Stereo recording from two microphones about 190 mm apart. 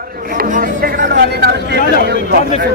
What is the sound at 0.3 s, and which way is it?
Speech, 45° right (ahead or behind).